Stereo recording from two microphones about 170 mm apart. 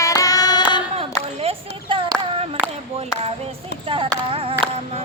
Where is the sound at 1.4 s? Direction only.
35° right (ahead or behind).